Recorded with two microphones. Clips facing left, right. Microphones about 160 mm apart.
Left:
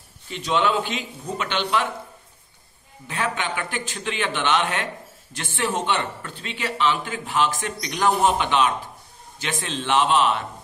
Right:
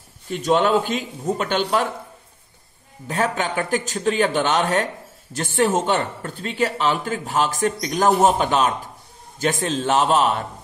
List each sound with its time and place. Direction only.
0.3 s a man's voice: 45° right (ahead or behind)
3.1 s speech: 40° right (ahead or behind)